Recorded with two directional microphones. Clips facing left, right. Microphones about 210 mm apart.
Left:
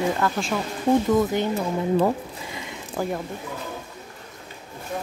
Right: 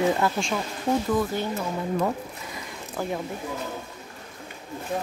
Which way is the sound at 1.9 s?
30° left (ahead or behind).